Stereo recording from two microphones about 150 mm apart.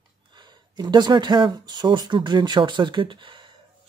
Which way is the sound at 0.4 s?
30° right (ahead or behind).